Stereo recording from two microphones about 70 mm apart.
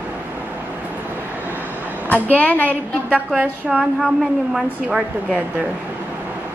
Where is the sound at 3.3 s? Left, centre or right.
Centre.